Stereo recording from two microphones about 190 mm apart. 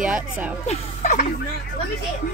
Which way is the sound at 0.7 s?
40° left (ahead or behind).